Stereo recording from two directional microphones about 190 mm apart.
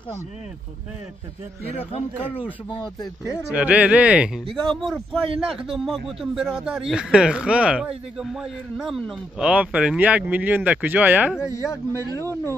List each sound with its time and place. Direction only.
1.8 s speech: 30° left (ahead or behind)
3.5 s a man's voice: 5° right (ahead or behind)
11.3 s speech: 15° left (ahead or behind)